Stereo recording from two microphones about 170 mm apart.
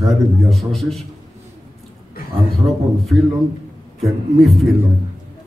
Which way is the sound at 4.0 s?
Centre (ahead or behind).